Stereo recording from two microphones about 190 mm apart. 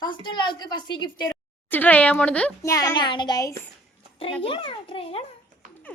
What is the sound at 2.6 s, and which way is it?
A woman's voice, 15° left (ahead or behind).